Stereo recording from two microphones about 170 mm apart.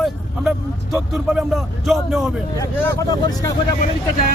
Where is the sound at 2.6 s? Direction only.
20° left (ahead or behind).